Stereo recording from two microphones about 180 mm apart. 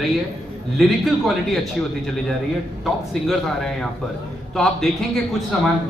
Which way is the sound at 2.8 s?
Centre (ahead or behind).